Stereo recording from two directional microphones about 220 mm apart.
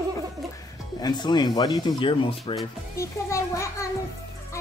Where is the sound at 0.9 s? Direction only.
20° left (ahead or behind).